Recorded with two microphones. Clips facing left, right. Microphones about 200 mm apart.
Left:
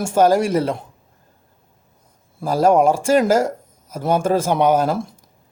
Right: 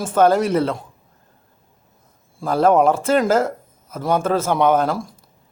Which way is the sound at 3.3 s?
10° left (ahead or behind).